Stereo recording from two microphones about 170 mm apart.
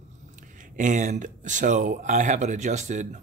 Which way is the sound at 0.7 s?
45° right (ahead or behind).